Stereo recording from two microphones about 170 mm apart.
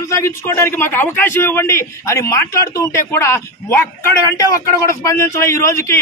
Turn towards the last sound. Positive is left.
turn(degrees=15)  # may be behind; listen again after turning